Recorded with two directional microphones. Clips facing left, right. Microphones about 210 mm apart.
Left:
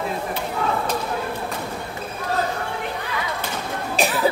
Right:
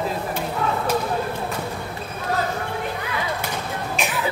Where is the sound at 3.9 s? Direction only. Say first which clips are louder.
Left 6 dB; 35° left (ahead or behind).